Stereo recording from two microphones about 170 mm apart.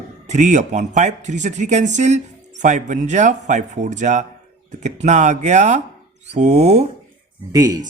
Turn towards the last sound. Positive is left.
turn(degrees=-20)  # may be behind; listen again after turning